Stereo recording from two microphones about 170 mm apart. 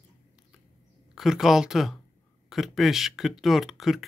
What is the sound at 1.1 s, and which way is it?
Speech, centre (ahead or behind).